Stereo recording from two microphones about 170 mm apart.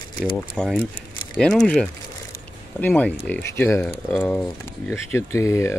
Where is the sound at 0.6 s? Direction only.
5° left (ahead or behind).